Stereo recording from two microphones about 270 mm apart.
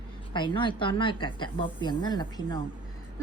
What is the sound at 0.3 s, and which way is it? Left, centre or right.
A woman's voice, centre.